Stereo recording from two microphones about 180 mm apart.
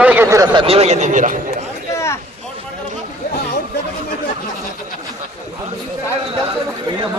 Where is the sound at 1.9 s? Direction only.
15° left (ahead or behind).